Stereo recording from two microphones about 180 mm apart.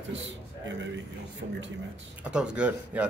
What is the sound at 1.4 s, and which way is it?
Speech, 55° right (ahead or behind).